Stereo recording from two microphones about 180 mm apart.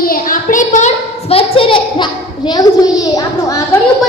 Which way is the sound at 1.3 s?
30° left (ahead or behind).